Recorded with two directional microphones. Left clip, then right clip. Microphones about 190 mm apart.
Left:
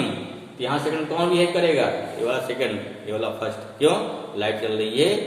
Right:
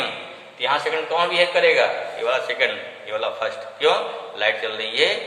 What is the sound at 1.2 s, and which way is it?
A man's voice, 20° left (ahead or behind).